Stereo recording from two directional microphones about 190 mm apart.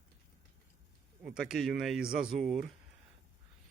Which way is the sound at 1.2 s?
5° right (ahead or behind).